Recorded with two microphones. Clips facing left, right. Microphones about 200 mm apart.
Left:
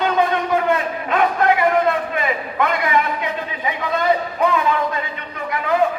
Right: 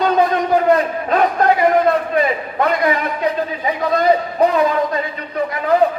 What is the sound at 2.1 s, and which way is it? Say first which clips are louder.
A man's voice: right 4 dB; 35° right (ahead or behind).